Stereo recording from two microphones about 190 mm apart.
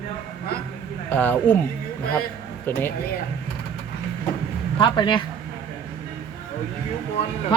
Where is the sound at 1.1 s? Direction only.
10° left (ahead or behind).